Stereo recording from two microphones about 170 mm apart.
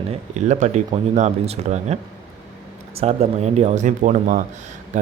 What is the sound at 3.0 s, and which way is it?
Speech, 40° right (ahead or behind).